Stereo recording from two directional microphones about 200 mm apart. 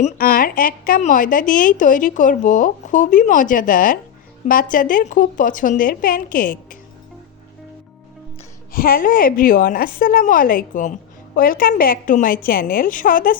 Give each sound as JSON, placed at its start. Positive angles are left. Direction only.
{"t": 0.0, "sound": "a woman's voice", "side_deg": 45}
{"t": 8.7, "sound": "speech", "side_deg": 45}